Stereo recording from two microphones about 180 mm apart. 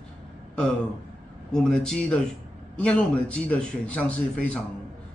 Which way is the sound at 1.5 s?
5° left (ahead or behind).